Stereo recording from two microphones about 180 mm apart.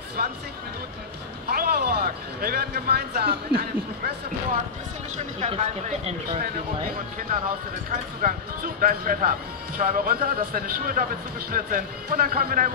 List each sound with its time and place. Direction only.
0.2 s speech: 55° right (ahead or behind)
1.5 s speech: 60° right (ahead or behind)
5.1 s speech: 40° right (ahead or behind)
6.9 s speech: 50° right (ahead or behind)